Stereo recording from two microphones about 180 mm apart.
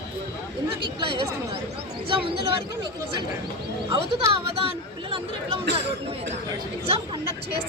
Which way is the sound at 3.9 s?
30° right (ahead or behind).